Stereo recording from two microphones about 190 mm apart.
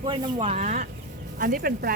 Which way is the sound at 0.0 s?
25° right (ahead or behind).